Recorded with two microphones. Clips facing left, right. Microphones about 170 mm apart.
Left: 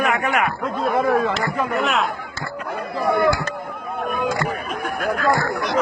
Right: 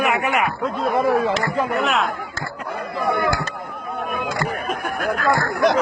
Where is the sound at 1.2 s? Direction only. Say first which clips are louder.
Right 1 dB; 20° right (ahead or behind).